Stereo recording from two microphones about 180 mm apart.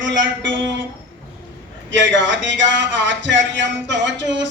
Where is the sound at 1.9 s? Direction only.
90° right.